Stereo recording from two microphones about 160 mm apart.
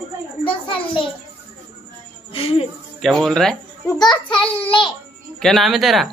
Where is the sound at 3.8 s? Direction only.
25° left (ahead or behind).